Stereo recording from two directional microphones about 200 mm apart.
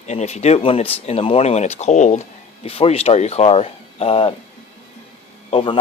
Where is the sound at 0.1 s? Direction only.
35° left (ahead or behind).